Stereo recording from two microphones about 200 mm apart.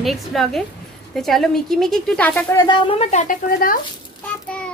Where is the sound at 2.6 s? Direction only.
25° left (ahead or behind); by 3.8 s 45° left (ahead or behind).